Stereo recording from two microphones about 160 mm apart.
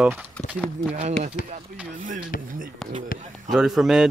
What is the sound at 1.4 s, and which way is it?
Speech, 55° left (ahead or behind).